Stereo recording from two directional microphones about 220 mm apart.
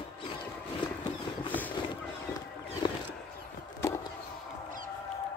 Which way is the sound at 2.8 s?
20° left (ahead or behind).